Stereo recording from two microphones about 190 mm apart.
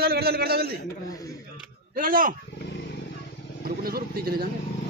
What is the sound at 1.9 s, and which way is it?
Speech, 45° right (ahead or behind).